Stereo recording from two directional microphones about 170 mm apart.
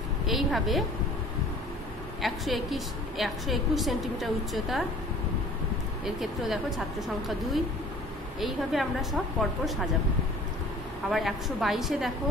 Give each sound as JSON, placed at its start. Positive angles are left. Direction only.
{"t": 0.3, "sound": "a sound", "side_deg": 0}
{"t": 2.2, "sound": "a woman's voice", "side_deg": 0}
{"t": 6.0, "sound": "a woman's voice", "side_deg": 0}
{"t": 11.1, "sound": "a woman's voice", "side_deg": 0}